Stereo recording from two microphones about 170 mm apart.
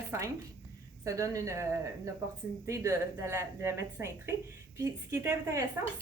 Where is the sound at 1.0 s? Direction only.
20° right (ahead or behind).